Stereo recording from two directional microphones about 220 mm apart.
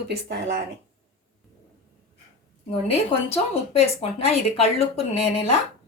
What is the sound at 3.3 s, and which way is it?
A woman's voice, 25° left (ahead or behind).